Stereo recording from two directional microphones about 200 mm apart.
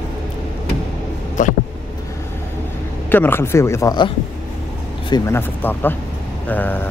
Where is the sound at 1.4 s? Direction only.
40° left (ahead or behind).